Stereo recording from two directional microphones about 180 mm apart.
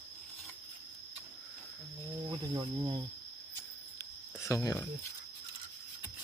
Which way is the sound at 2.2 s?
25° right (ahead or behind).